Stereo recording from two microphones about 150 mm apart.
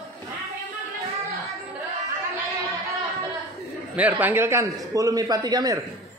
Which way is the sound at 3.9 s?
10° right (ahead or behind).